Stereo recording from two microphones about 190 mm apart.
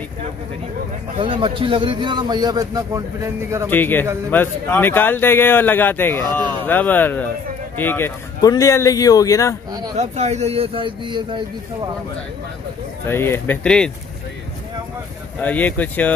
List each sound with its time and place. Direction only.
1.2 s a man's voice: 25° right (ahead or behind)
3.7 s speech: 10° left (ahead or behind)
9.9 s speech: 35° right (ahead or behind)
13.0 s speech: 10° left (ahead or behind)
15.4 s speech: 10° left (ahead or behind)